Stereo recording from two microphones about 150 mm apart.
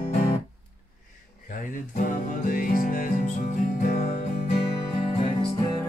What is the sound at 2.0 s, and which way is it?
Music, 65° left (ahead or behind).